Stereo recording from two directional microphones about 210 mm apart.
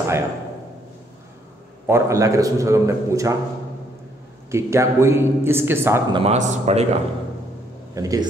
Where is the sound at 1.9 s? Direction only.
15° right (ahead or behind).